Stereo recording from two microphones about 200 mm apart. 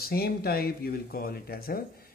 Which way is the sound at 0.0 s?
50° left (ahead or behind).